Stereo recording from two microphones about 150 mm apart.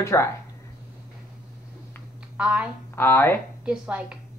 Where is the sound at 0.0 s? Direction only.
15° left (ahead or behind).